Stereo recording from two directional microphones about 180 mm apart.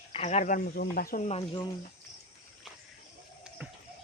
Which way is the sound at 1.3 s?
30° left (ahead or behind).